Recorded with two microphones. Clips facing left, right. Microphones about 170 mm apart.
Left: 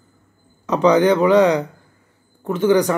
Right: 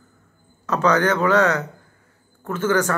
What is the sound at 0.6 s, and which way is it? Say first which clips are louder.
Speech: left 5 dB; 15° left (ahead or behind).